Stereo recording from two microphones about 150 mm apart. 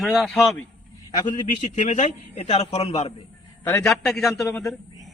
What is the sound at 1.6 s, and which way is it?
A man's voice, 55° left (ahead or behind).